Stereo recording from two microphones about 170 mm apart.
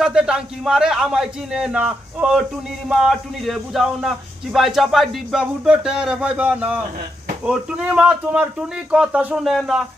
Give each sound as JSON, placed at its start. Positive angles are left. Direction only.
{"t": 0.0, "sound": "speech", "side_deg": -5}